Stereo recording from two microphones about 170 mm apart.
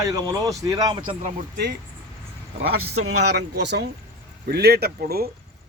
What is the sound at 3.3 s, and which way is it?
Speech, 85° right.